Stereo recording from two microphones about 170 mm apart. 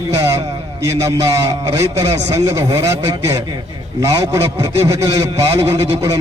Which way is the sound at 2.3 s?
15° right (ahead or behind).